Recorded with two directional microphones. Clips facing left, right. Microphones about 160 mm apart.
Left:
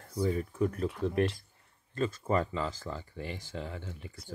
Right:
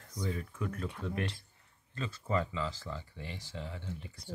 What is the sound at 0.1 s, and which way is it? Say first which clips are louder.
Speech: left 7 dB; 35° left (ahead or behind).